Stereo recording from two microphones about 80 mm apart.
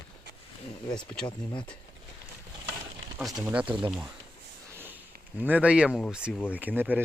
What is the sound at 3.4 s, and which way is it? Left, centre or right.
Speech, centre.